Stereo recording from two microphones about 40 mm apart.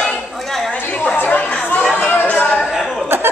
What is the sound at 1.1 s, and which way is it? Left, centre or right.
Chatter, left.